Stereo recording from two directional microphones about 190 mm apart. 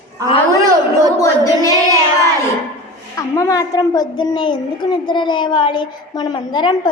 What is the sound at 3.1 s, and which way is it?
A woman's voice, 15° left (ahead or behind).